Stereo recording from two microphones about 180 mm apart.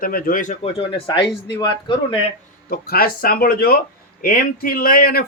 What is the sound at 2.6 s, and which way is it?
Speech, 55° left (ahead or behind).